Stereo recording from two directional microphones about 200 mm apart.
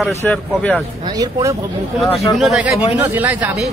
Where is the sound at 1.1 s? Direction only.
20° right (ahead or behind).